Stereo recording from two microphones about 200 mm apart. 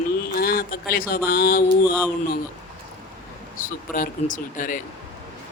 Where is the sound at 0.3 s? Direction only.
50° left (ahead or behind).